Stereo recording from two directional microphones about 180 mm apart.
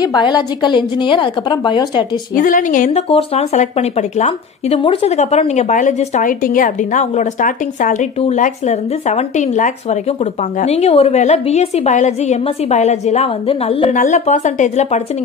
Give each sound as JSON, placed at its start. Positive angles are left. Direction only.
{"t": 0.0, "sound": "a woman's voice", "side_deg": 25}
{"t": 2.3, "sound": "a woman's voice", "side_deg": 50}
{"t": 3.1, "sound": "speech", "side_deg": 35}
{"t": 13.9, "sound": "speech", "side_deg": 40}